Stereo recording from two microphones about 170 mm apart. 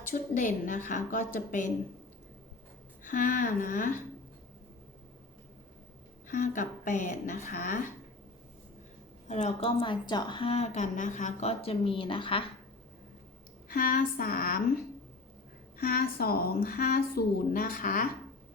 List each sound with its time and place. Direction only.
0.1 s speech: 50° left (ahead or behind)
3.0 s speech: 50° left (ahead or behind)
6.2 s speech: 50° left (ahead or behind)
9.2 s a woman's voice: 40° left (ahead or behind)
13.7 s a woman's voice: 55° left (ahead or behind)
15.8 s a woman's voice: 60° left (ahead or behind)